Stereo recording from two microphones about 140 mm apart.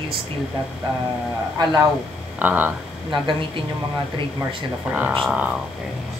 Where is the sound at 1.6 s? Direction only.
30° right (ahead or behind).